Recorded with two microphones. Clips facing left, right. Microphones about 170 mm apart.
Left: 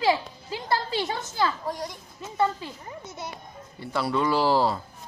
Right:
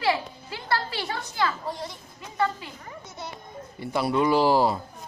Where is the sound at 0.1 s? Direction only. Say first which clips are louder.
Left 2 dB; 20° left (ahead or behind).